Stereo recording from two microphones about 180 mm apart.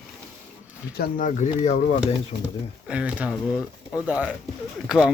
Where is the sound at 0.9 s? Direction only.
50° left (ahead or behind).